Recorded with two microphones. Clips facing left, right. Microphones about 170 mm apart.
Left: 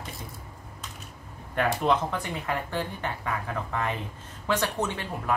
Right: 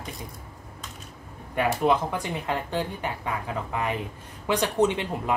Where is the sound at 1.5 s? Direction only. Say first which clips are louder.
Right 2 dB; 10° right (ahead or behind).